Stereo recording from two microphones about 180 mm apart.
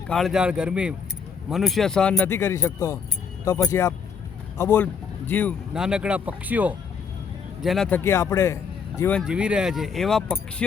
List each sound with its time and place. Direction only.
0.1 s a man's voice: centre (ahead or behind)
5.7 s speech: 5° right (ahead or behind)
9.2 s speech: 5° right (ahead or behind)